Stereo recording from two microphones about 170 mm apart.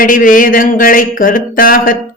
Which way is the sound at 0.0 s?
55° left (ahead or behind).